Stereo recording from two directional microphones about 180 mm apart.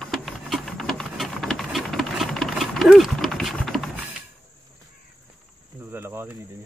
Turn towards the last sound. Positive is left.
turn(degrees=-10)  # may be behind; listen again after turning